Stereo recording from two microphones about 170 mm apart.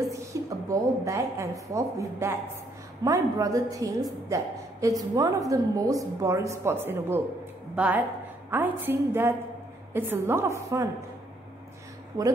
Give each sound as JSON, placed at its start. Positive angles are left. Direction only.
{"t": 0.1, "sound": "a woman's voice", "side_deg": -20}
{"t": 12.1, "sound": "a woman's voice", "side_deg": -25}